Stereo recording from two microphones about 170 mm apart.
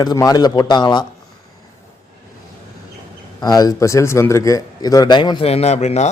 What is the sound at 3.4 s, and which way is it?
A man's voice, 25° left (ahead or behind).